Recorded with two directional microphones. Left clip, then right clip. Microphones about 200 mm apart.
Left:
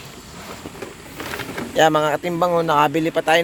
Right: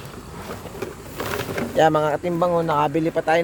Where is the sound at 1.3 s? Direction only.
55° right (ahead or behind).